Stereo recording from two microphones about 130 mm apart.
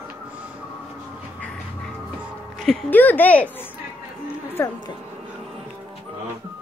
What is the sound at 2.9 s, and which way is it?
A woman's voice, 15° left (ahead or behind).